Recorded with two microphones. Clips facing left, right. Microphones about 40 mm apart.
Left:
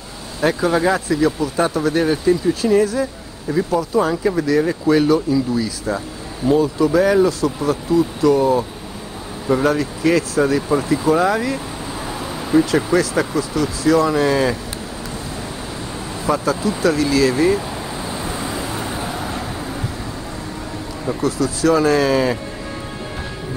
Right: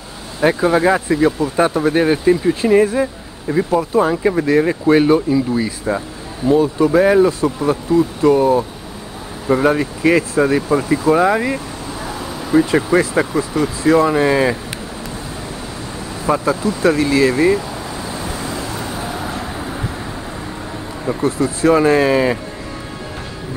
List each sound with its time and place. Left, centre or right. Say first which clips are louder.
0.4 s speech: right 3 dB; right
6.5 s speech: right 2 dB; right
6.9 s speech: right 3 dB; right
16.3 s speech: right 2 dB; right
18.0 s vehicle: even; centre
19.1 s vehicle: right 1 dB; centre
21.2 s speech: right 2 dB; right